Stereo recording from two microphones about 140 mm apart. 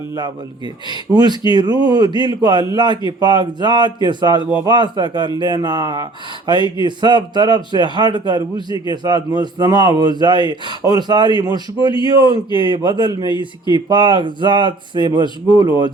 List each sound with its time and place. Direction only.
0.9 s speech: 30° right (ahead or behind)